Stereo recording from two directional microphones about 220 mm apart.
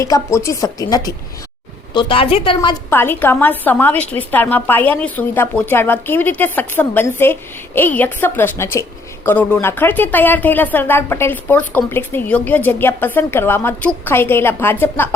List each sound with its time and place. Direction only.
0.0 s a woman's voice: 15° left (ahead or behind)
2.9 s a woman's voice: 10° left (ahead or behind)